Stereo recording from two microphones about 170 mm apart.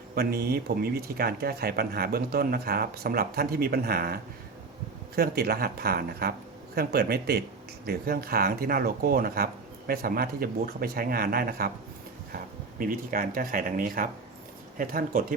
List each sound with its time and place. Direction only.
0.2 s a man's voice: 65° right (ahead or behind)
12.8 s speech: 55° right (ahead or behind)